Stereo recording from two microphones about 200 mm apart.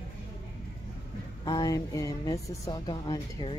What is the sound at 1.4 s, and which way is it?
Speech, 20° left (ahead or behind).